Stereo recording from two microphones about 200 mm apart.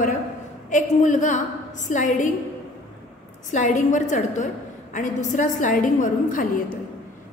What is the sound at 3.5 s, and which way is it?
A woman's voice, 40° left (ahead or behind).